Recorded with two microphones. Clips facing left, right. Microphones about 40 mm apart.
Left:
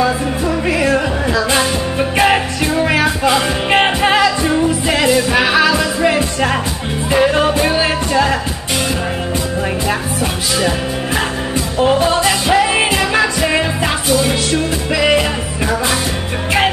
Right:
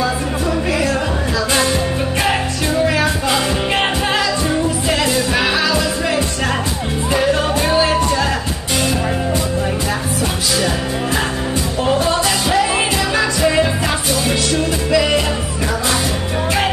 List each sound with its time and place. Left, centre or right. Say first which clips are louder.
0.7 s music: left 6 dB; left
4.0 s music: left 5 dB; left
4.5 s music: left 3 dB; centre
5.6 s music: left 4 dB; left
11.8 s music: left 4 dB; centre
14.5 s music: right 1 dB; centre